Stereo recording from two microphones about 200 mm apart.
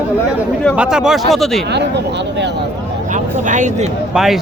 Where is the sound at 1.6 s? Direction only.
60° right (ahead or behind).